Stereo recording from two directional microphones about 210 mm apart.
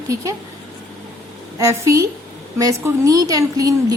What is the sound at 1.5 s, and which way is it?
A woman's voice, 15° right (ahead or behind).